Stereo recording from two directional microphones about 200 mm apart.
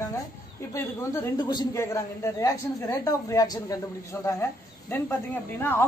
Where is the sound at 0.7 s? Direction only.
15° left (ahead or behind).